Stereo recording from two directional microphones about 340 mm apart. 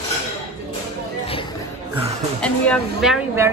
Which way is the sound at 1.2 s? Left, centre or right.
Centre.